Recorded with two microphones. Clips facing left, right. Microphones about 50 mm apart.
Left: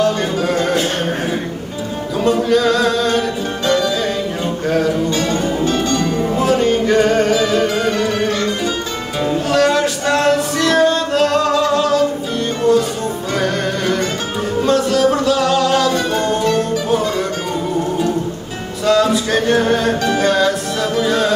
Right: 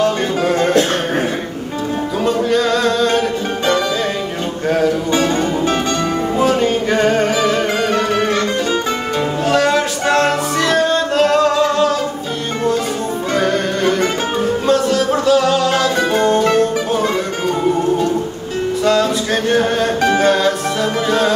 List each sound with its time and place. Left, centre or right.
0.0 s music: centre
2.2 s music: centre
4.6 s music: centre
5.1 s music: right
6.3 s music: centre
9.5 s music: centre
13.3 s music: centre
18.9 s a capella: centre
20.2 s music: centre